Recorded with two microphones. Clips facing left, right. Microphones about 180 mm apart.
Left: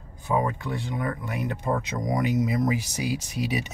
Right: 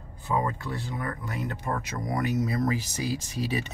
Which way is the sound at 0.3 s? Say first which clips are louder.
Left 3 dB; 15° left (ahead or behind).